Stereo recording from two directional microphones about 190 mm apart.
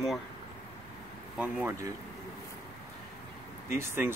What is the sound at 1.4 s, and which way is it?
Speech, 5° right (ahead or behind).